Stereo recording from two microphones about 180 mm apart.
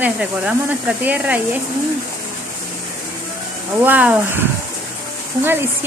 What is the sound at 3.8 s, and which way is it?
Speech, 10° right (ahead or behind).